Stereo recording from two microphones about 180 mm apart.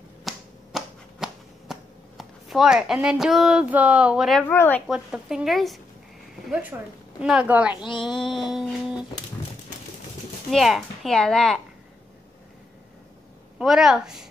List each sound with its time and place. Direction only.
0.3 s a sound: centre (ahead or behind)
4.5 s speech: 10° left (ahead or behind)
4.8 s a woman's voice: 5° right (ahead or behind)
7.2 s a woman's voice: 5° right (ahead or behind)
7.7 s speech: 25° left (ahead or behind)
8.2 s a woman's voice: centre (ahead or behind)
10.5 s a woman's voice: centre (ahead or behind)
13.6 s a woman's voice: centre (ahead or behind)